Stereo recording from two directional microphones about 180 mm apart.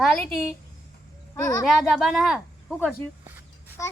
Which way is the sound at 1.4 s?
20° left (ahead or behind).